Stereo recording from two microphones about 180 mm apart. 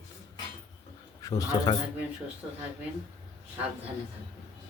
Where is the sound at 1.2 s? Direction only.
20° left (ahead or behind).